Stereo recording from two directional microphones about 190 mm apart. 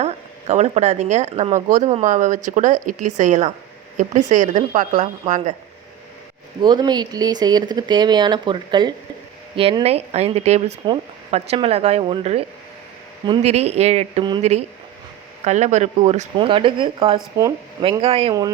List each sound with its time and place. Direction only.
0.0 s speech: 35° right (ahead or behind)
6.6 s speech: 20° right (ahead or behind)
16.5 s speech: 25° right (ahead or behind)